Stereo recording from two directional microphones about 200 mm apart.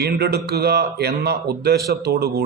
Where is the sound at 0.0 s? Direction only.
55° right (ahead or behind).